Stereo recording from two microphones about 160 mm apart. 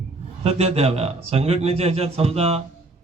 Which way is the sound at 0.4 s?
40° right (ahead or behind).